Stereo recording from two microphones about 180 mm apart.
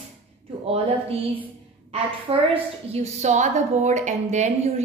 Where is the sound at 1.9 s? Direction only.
30° right (ahead or behind).